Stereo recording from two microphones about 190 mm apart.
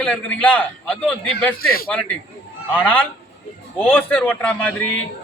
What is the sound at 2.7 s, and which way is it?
A man's voice, 10° left (ahead or behind).